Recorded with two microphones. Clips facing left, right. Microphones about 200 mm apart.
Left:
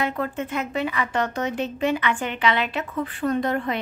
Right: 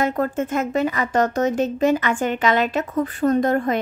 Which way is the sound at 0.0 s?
45° right (ahead or behind).